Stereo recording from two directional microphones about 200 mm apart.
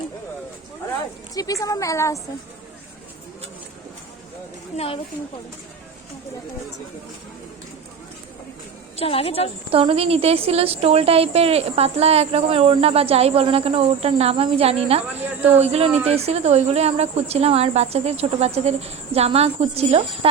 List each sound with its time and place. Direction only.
1.4 s speech: 15° left (ahead or behind)
9.0 s a woman's voice: 30° left (ahead or behind)
9.7 s speech: 30° right (ahead or behind)